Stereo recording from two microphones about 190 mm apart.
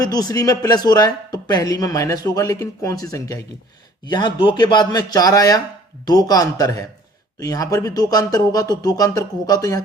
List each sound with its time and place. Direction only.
0.0 s speech: 20° left (ahead or behind)